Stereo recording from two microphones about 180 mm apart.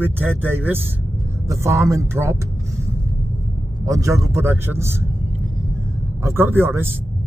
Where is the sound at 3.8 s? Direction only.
20° right (ahead or behind).